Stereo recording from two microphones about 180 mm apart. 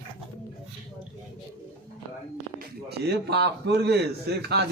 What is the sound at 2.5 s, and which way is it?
A man's voice, 65° right (ahead or behind).